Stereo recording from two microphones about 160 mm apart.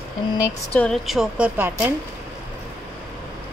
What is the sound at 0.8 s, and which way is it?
Speech, centre (ahead or behind).